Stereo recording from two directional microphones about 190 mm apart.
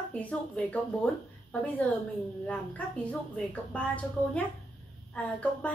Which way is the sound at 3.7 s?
5° left (ahead or behind).